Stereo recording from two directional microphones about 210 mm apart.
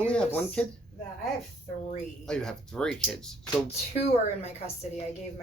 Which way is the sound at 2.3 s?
5° left (ahead or behind).